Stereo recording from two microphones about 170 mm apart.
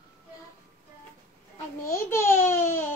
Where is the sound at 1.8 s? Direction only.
15° left (ahead or behind).